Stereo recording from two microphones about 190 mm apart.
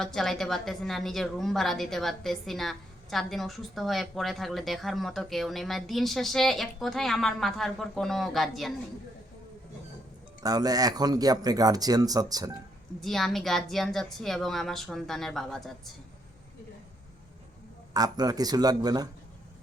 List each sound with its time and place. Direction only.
0.0 s a woman's voice: centre (ahead or behind)
10.4 s speech: 20° right (ahead or behind)
13.0 s a woman's voice: centre (ahead or behind)
17.9 s speech: 20° right (ahead or behind)